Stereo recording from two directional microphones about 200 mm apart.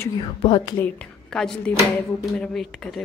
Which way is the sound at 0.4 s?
25° left (ahead or behind).